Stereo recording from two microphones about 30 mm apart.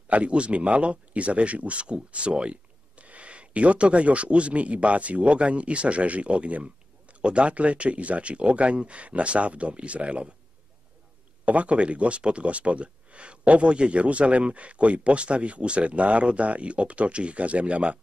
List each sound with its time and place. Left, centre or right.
0.1 s speech: right
11.4 s speech: right